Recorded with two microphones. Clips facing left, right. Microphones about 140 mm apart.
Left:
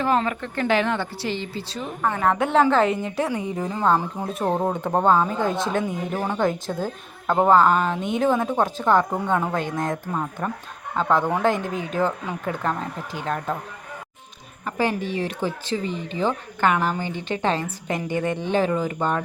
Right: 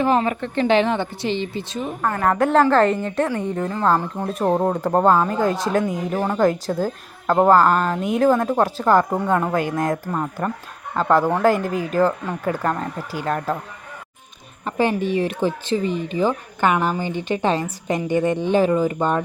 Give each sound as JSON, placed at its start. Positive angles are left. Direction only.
{"t": 0.0, "sound": "a woman's voice", "side_deg": -20}
{"t": 2.0, "sound": "a woman's voice", "side_deg": 0}
{"t": 14.6, "sound": "a woman's voice", "side_deg": -20}